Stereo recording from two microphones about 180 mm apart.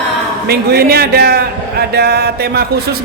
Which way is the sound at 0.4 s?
60° right (ahead or behind).